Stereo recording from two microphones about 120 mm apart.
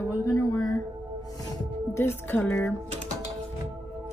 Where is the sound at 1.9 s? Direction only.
20° left (ahead or behind).